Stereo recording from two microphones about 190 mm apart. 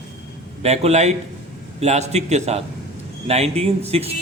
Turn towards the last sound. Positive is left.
turn(degrees=-30)  # may be behind; listen again after turning